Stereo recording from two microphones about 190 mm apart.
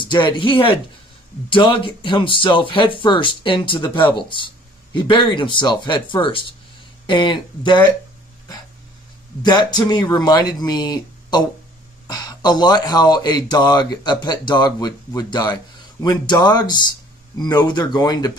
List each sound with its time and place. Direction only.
0.0 s speech: 25° left (ahead or behind)
9.4 s speech: 20° left (ahead or behind)